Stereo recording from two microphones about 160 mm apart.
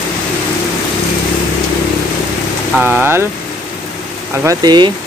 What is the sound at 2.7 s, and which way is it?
Speech, 10° right (ahead or behind).